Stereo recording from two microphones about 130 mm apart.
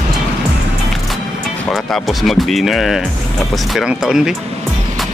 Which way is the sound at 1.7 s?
Centre (ahead or behind).